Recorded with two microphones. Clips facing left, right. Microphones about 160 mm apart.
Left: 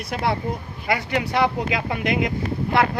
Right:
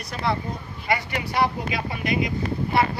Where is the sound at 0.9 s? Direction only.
70° left (ahead or behind).